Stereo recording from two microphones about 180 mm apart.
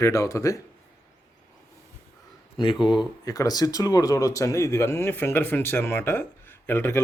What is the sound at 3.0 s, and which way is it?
Speech, 20° left (ahead or behind).